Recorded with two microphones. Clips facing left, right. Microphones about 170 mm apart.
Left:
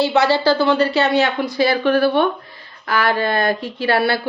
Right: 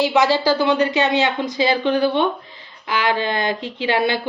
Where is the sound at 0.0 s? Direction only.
15° right (ahead or behind).